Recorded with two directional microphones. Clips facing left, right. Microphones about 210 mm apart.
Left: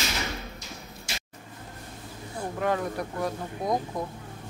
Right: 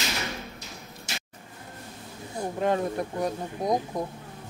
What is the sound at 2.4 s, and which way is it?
Speech, 25° right (ahead or behind).